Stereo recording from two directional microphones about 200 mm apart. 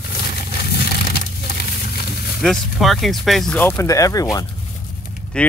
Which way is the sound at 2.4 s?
Centre (ahead or behind).